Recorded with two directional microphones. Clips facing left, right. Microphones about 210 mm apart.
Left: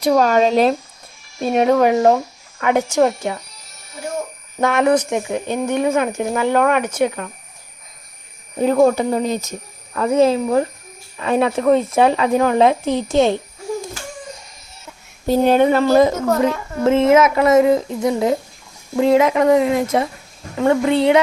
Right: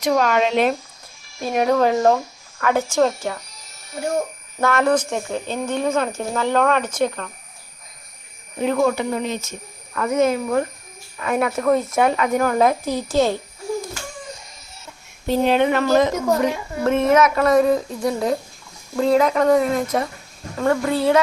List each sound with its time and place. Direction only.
0.0 s speech: 35° left (ahead or behind)
1.4 s speech: 25° left (ahead or behind)
4.6 s speech: 15° left (ahead or behind)
8.5 s speech: 40° left (ahead or behind)
9.9 s speech: 30° left (ahead or behind)
15.3 s speech: 45° left (ahead or behind)
16.5 s speech: 15° right (ahead or behind)
16.8 s speech: 25° left (ahead or behind)